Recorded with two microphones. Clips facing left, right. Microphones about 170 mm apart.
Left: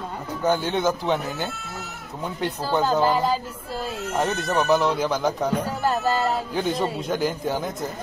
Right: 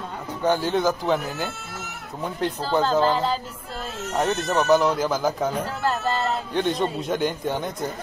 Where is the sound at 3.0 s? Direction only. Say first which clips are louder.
Left 1 dB; 15° left (ahead or behind).